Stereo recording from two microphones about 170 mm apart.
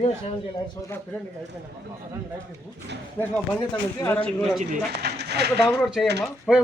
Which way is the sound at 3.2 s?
10° left (ahead or behind).